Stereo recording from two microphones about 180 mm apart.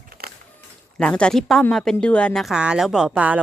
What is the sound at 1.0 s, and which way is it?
A woman's voice, 5° left (ahead or behind).